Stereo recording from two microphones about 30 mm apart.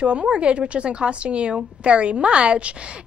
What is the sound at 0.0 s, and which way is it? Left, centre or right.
Speech, right.